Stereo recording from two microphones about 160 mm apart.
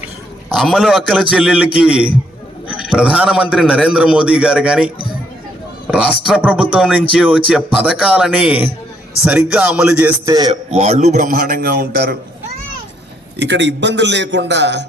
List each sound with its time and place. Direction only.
0.5 s a man's voice: centre (ahead or behind)
5.9 s a man's voice: 5° right (ahead or behind)
10.2 s a man's voice: 25° right (ahead or behind)
10.7 s a man's voice: 45° right (ahead or behind); by 12.1 s 75° right (ahead or behind)
13.4 s a man's voice: 90° right